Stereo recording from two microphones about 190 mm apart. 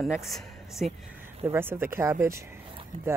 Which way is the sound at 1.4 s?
10° right (ahead or behind).